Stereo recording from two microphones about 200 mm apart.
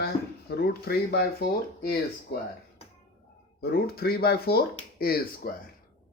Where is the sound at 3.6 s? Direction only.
50° left (ahead or behind).